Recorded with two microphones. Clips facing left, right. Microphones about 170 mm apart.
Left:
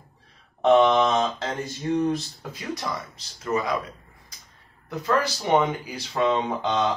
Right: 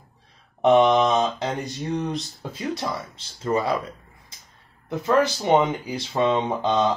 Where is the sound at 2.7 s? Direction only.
25° right (ahead or behind).